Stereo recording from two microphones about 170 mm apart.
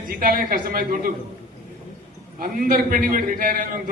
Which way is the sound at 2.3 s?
55° right (ahead or behind).